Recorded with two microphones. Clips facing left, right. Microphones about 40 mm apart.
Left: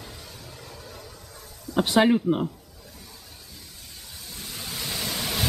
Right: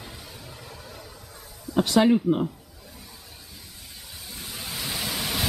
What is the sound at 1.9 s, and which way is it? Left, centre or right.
Speech, left.